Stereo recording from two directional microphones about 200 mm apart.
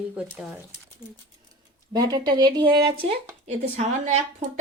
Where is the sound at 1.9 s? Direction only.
20° right (ahead or behind).